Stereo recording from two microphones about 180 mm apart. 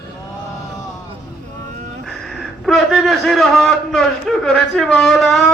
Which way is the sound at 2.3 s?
Centre (ahead or behind).